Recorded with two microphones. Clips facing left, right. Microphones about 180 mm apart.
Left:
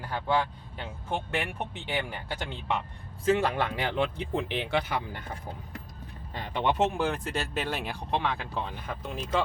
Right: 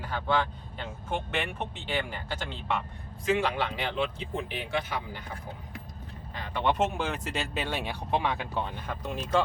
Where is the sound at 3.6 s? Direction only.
50° left (ahead or behind).